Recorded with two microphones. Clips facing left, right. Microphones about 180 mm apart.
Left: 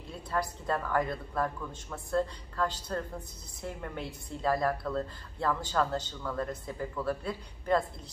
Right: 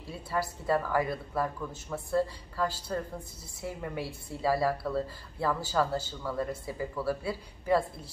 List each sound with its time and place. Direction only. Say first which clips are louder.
0.3 s a woman's voice: right 3 dB; 5° right (ahead or behind)